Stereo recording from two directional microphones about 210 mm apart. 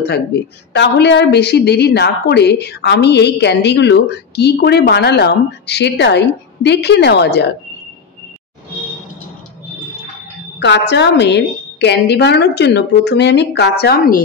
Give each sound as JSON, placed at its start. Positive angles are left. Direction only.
{"t": 0.7, "sound": "a woman's voice", "side_deg": 55}
{"t": 10.6, "sound": "a woman's voice", "side_deg": 55}